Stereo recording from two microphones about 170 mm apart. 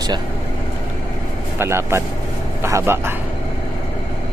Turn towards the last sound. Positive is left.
turn(degrees=-15)  # may be behind; listen again after turning